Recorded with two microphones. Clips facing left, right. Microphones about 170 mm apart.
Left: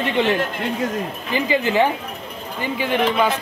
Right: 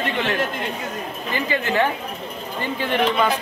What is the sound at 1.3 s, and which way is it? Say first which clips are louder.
Speech: left 4 dB; 15° left (ahead or behind).